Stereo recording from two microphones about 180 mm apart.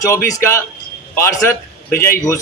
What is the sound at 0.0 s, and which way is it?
A man's voice, 15° left (ahead or behind).